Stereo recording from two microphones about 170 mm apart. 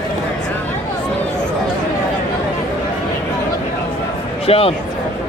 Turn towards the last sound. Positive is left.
turn(degrees=35)  # may be behind; listen again after turning